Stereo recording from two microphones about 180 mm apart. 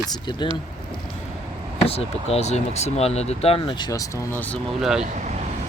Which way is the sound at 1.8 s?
35° left (ahead or behind).